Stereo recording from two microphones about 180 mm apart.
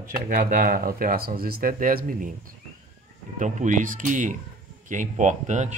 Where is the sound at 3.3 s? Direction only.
45° right (ahead or behind).